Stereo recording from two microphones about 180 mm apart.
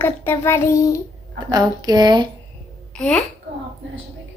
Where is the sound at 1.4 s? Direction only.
20° right (ahead or behind).